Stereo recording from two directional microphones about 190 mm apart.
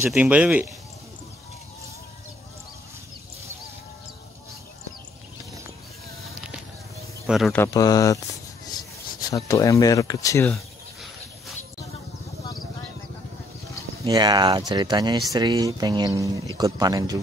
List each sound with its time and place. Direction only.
0.0 s speech: 5° right (ahead or behind)
7.2 s speech: centre (ahead or behind)
7.5 s speech: 15° left (ahead or behind)
10.5 s a sound: centre (ahead or behind)
14.0 s speech: 20° right (ahead or behind)